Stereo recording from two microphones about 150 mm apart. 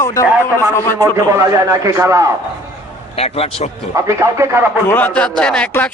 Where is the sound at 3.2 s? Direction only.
40° left (ahead or behind).